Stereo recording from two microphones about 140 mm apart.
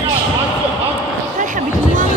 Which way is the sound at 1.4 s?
65° right (ahead or behind).